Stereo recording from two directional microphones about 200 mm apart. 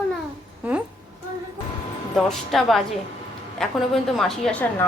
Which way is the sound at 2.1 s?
Centre (ahead or behind).